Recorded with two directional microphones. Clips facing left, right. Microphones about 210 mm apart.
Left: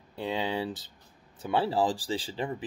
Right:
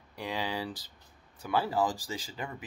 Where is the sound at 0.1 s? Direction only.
25° left (ahead or behind).